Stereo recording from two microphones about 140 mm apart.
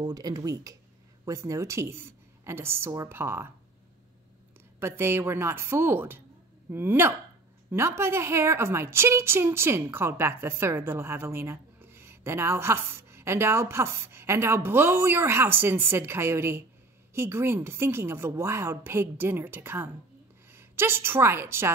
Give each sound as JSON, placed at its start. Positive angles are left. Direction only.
{"t": 0.0, "sound": "a woman's voice", "side_deg": -25}
{"t": 4.7, "sound": "a woman's voice", "side_deg": -15}